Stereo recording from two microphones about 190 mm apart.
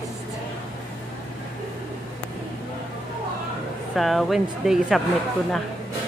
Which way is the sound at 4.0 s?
Centre (ahead or behind).